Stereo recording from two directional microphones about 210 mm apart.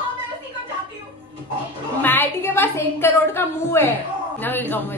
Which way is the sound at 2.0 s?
10° left (ahead or behind).